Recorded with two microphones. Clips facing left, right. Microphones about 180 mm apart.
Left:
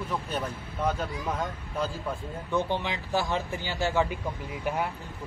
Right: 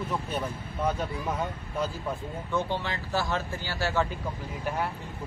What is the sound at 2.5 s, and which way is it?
A man's voice, 15° left (ahead or behind).